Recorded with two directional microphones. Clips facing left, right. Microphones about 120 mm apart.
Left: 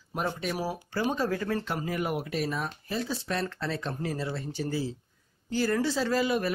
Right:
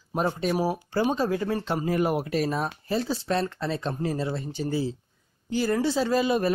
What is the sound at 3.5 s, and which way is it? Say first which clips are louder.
Speech: right 4 dB; 20° right (ahead or behind).